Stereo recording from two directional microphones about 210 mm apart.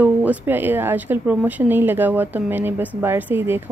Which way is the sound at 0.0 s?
10° right (ahead or behind).